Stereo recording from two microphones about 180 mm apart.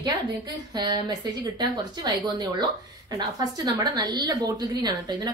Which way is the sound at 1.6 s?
25° right (ahead or behind).